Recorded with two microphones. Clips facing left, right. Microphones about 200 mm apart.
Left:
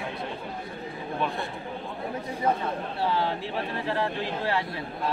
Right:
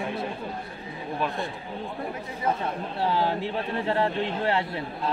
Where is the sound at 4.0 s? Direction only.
25° right (ahead or behind).